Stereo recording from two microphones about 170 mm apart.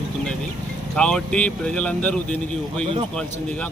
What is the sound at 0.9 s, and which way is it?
Speech, 5° left (ahead or behind).